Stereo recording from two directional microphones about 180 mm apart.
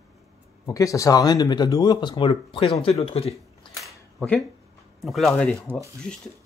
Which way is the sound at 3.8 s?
5° left (ahead or behind).